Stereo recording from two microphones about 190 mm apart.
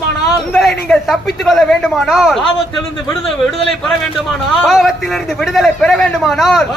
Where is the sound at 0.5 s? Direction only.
Centre (ahead or behind).